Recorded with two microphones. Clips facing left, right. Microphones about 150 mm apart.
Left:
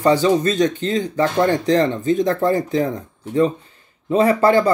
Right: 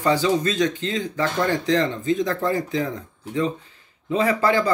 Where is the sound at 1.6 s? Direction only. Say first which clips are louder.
Left 4 dB; 40° left (ahead or behind).